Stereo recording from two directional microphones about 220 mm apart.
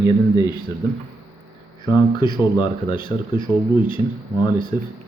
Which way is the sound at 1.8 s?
20° left (ahead or behind).